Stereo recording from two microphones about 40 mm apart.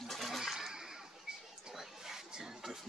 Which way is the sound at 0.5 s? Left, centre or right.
Centre.